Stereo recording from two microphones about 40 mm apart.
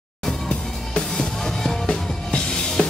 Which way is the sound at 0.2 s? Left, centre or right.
Centre.